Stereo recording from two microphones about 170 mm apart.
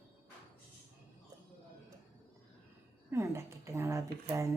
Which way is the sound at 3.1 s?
15° right (ahead or behind).